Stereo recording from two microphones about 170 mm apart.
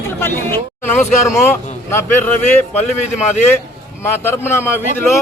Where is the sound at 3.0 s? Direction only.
40° left (ahead or behind).